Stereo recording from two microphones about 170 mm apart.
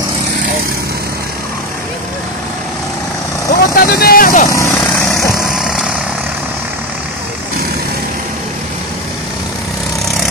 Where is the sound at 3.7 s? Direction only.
65° left (ahead or behind).